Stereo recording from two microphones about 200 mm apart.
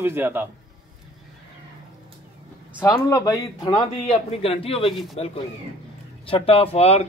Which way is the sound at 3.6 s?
30° left (ahead or behind).